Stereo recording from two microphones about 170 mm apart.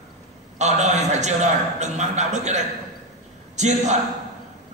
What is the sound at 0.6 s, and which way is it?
A man's voice, 45° right (ahead or behind).